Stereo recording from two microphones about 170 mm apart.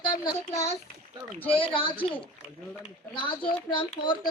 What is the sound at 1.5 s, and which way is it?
A woman's voice, 30° left (ahead or behind).